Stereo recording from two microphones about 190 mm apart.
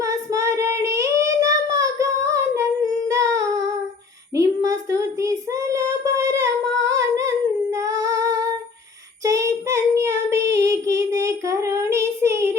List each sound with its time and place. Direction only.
0.0 s child singing: 15° right (ahead or behind)
3.1 s humming: 15° right (ahead or behind)
4.4 s child singing: 15° right (ahead or behind)
6.8 s humming: 15° right (ahead or behind)
9.2 s child singing: 15° right (ahead or behind)